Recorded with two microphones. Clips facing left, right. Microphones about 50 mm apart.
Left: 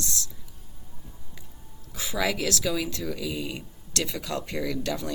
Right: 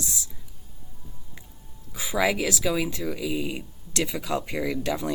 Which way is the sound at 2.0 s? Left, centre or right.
Centre.